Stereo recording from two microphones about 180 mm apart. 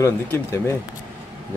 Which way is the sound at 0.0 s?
15° left (ahead or behind).